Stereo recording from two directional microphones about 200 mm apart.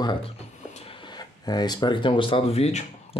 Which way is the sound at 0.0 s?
25° left (ahead or behind).